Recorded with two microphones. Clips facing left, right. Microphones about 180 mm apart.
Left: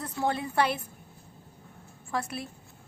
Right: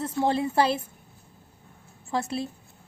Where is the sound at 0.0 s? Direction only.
25° right (ahead or behind).